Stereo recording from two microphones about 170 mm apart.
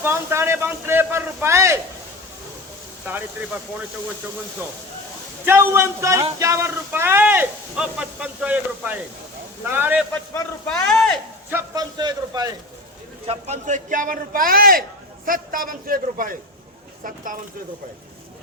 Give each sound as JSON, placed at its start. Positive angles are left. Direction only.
{"t": 0.0, "sound": "speech", "side_deg": -15}
{"t": 5.5, "sound": "speech", "side_deg": -15}
{"t": 10.7, "sound": "speech", "side_deg": 0}
{"t": 11.5, "sound": "a man's voice", "side_deg": -20}
{"t": 13.2, "sound": "a man's voice", "side_deg": -45}